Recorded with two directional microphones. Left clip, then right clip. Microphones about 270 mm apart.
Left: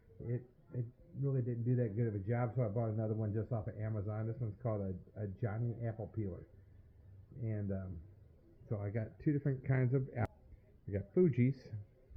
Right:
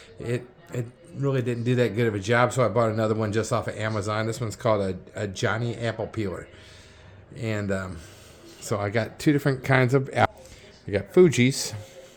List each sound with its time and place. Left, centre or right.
1.2 s speech: centre
7.4 s speech: centre